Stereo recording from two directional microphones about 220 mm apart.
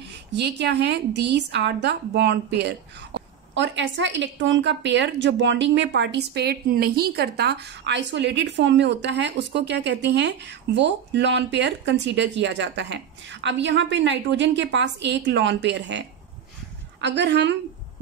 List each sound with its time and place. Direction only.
0.3 s a woman's voice: 50° right (ahead or behind)